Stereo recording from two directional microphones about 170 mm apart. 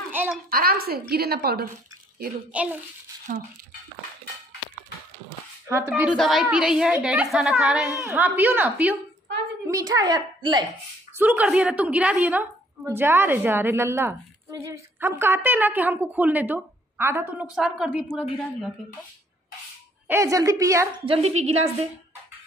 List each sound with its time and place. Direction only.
0.1 s a sound: 10° right (ahead or behind)
0.5 s a woman's voice: 60° right (ahead or behind)
2.5 s a woman's voice: 10° right (ahead or behind)
5.9 s a woman's voice: 5° right (ahead or behind)
9.7 s a child's voice: 20° right (ahead or behind)
11.1 s a woman's voice: 10° right (ahead or behind)
20.1 s a woman's voice: 15° right (ahead or behind)
21.0 s a woman's voice: 35° right (ahead or behind)